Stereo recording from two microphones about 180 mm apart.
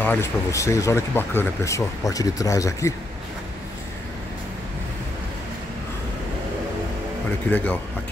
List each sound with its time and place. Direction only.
0.0 s speech: 10° left (ahead or behind)
7.5 s speech: 10° left (ahead or behind)